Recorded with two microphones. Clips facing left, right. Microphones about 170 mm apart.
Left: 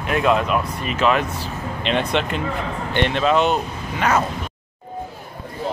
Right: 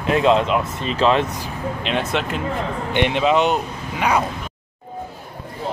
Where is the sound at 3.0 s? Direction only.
15° right (ahead or behind).